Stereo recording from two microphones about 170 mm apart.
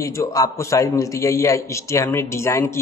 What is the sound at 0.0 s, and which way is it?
A man's voice, 20° left (ahead or behind).